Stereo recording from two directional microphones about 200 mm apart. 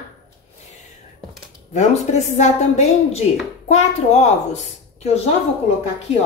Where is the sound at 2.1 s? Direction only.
35° left (ahead or behind).